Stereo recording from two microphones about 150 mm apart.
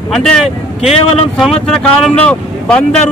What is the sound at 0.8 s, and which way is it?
Speech, 45° left (ahead or behind).